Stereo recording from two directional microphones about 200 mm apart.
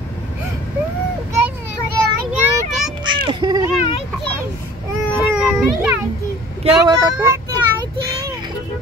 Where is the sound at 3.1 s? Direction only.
25° right (ahead or behind).